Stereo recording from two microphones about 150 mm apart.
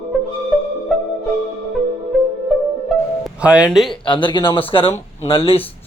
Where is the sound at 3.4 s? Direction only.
5° right (ahead or behind).